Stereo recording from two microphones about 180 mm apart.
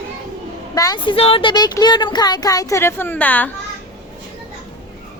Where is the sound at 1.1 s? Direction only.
30° left (ahead or behind); by 3.4 s 10° left (ahead or behind).